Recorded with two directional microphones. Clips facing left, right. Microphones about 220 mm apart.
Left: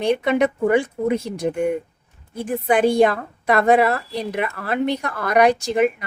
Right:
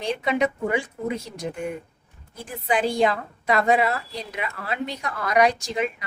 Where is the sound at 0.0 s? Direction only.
60° left (ahead or behind).